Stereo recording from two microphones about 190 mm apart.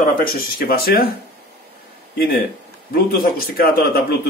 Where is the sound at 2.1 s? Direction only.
55° left (ahead or behind).